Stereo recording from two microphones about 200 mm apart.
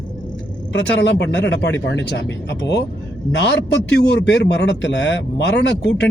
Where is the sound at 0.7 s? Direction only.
60° left (ahead or behind).